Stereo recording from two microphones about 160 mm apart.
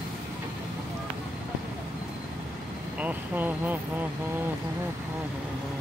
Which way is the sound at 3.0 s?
10° right (ahead or behind).